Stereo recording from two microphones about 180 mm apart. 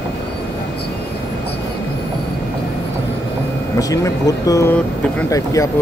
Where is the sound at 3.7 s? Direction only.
20° left (ahead or behind).